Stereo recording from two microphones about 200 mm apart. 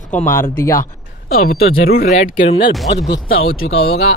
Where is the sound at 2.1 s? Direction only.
40° left (ahead or behind).